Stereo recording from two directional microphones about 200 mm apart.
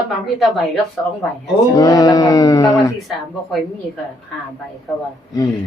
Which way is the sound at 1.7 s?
15° left (ahead or behind).